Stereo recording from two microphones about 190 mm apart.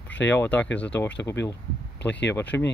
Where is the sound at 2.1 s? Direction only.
65° left (ahead or behind).